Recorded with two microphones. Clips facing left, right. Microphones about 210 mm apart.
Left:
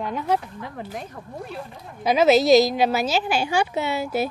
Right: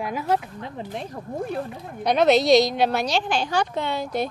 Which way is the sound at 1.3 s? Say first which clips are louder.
Right 7 dB; 50° right (ahead or behind).